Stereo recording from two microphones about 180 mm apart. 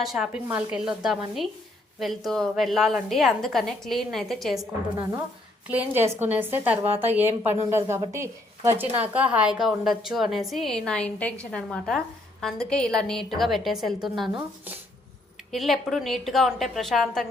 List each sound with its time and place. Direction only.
0.0 s a woman's voice: centre (ahead or behind)
15.5 s a woman's voice: centre (ahead or behind)